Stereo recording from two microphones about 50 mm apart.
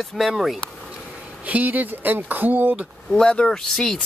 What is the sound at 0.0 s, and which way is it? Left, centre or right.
Speech, centre.